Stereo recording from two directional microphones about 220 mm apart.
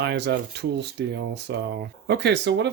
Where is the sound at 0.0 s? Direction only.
50° right (ahead or behind).